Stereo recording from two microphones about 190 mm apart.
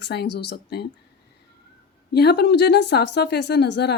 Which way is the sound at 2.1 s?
60° left (ahead or behind).